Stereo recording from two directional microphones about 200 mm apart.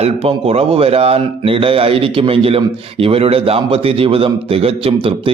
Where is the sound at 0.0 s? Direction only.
30° right (ahead or behind).